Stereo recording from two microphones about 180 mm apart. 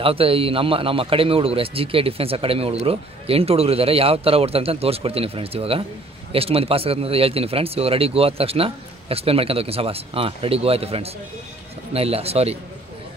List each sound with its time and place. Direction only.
0.0 s a man's voice: 30° right (ahead or behind)